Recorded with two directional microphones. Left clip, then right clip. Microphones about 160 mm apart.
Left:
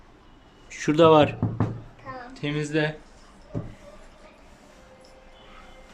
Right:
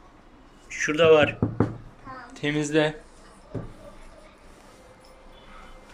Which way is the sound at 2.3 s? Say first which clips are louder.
Right 4 dB; 5° left (ahead or behind).